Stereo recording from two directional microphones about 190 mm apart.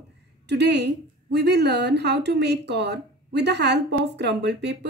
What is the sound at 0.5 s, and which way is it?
A woman's voice, 60° right (ahead or behind).